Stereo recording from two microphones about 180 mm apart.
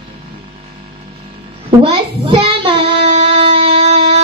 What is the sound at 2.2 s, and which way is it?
Child singing, 30° right (ahead or behind).